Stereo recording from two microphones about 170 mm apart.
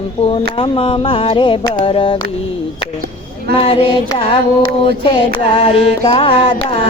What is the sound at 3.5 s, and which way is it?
Music, 30° left (ahead or behind).